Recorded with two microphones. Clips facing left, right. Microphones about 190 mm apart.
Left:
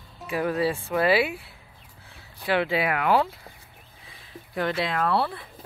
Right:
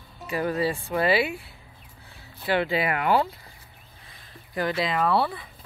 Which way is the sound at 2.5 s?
Centre (ahead or behind).